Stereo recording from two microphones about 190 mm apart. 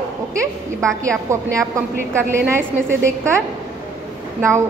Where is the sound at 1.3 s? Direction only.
15° right (ahead or behind).